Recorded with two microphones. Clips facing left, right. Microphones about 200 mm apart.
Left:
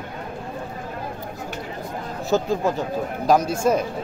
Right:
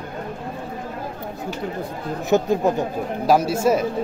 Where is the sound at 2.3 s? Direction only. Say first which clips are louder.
Right 3 dB; 20° right (ahead or behind).